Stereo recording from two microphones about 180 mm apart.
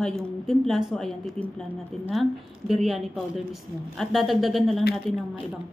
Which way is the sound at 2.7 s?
Centre (ahead or behind).